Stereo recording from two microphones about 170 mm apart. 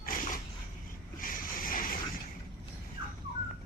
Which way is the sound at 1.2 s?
55° left (ahead or behind).